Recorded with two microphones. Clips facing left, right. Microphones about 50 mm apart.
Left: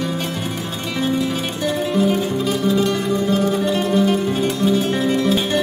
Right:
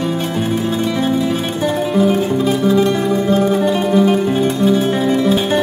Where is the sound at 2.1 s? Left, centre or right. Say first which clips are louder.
Right 4 dB; right.